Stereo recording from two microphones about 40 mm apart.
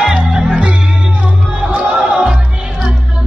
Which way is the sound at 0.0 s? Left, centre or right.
Centre.